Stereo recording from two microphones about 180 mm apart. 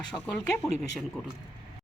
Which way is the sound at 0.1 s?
5° left (ahead or behind).